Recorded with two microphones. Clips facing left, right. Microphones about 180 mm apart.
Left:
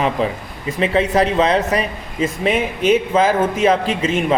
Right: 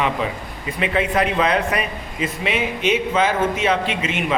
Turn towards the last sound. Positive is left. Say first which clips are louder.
# left 4 dB
turn(degrees=35)  # may be behind; listen again after turning